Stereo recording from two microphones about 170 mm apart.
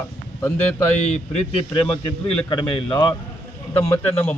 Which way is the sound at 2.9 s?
15° left (ahead or behind).